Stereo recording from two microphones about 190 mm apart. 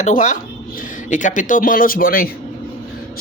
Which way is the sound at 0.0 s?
40° left (ahead or behind).